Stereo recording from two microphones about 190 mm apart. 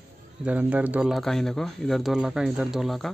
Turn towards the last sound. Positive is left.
turn(degrees=0)  # may be behind; listen again after turning